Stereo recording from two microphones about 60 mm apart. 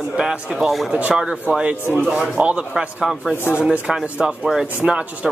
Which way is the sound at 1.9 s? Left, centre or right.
Centre.